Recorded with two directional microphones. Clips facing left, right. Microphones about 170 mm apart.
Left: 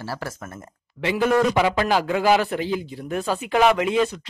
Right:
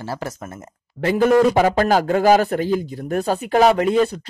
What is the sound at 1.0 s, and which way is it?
A man's voice, 45° right (ahead or behind).